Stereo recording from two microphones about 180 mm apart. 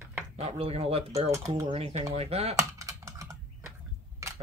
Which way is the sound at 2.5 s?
15° right (ahead or behind).